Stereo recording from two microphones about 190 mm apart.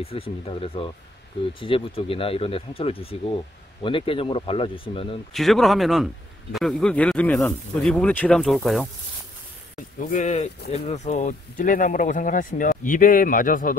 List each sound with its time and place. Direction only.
0.0 s speech: 30° left (ahead or behind)
5.3 s speech: centre (ahead or behind)
9.9 s speech: 45° left (ahead or behind)